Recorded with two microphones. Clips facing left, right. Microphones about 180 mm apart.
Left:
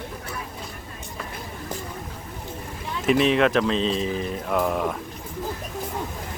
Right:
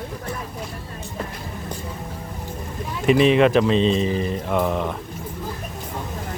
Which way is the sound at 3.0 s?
Centre (ahead or behind).